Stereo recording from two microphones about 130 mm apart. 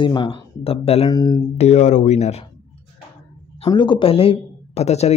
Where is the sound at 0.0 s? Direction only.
40° left (ahead or behind).